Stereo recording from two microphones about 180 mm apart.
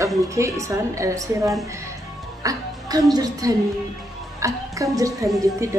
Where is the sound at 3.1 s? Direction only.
20° right (ahead or behind).